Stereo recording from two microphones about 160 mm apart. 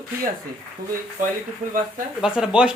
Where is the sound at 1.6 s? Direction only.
55° right (ahead or behind).